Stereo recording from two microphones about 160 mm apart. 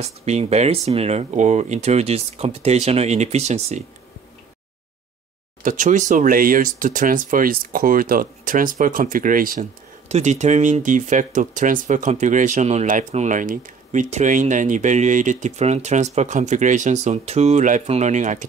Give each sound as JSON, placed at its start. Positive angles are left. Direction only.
{"t": 0.0, "sound": "speech", "side_deg": -40}
{"t": 5.6, "sound": "speech", "side_deg": -55}
{"t": 10.0, "sound": "speech", "side_deg": -45}